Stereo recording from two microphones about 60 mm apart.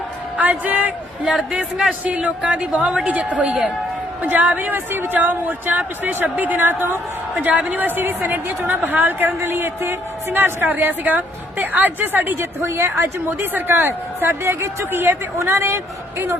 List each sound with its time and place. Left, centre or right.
0.3 s a man's voice: right
7.6 s a woman's voice: right
7.9 s a woman's voice: right
12.6 s a woman's voice: right
14.4 s speech: right